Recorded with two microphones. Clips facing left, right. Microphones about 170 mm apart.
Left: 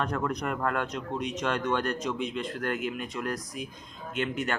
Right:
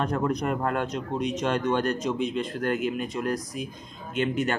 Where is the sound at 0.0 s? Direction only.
30° right (ahead or behind).